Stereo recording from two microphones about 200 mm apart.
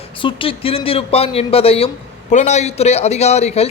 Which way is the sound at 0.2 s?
25° left (ahead or behind).